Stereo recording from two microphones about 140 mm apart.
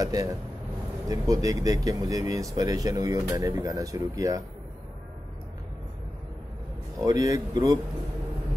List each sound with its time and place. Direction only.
0.0 s speech: 25° right (ahead or behind)
7.0 s speech: 25° right (ahead or behind)